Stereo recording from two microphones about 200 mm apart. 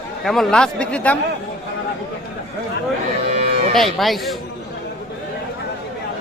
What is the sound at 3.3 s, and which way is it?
Livestock, 35° right (ahead or behind).